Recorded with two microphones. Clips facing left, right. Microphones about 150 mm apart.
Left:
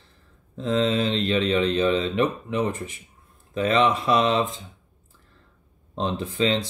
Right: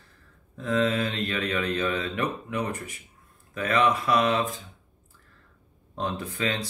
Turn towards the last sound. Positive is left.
turn(degrees=25)  # may be behind; listen again after turning